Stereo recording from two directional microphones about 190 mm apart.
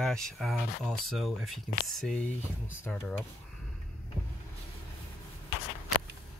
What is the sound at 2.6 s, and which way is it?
Speech, 10° left (ahead or behind).